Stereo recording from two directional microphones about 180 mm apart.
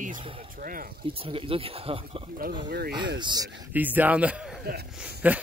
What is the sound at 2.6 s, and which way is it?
Speech, 60° right (ahead or behind).